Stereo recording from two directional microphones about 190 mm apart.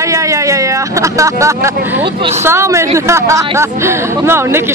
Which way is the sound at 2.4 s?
15° right (ahead or behind).